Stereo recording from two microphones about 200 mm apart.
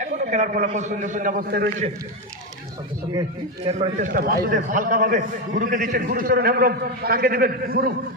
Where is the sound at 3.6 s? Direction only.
30° right (ahead or behind); by 7.9 s 45° right (ahead or behind).